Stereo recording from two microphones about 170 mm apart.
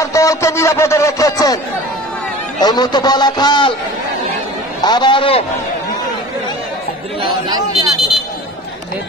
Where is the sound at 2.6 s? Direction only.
25° left (ahead or behind).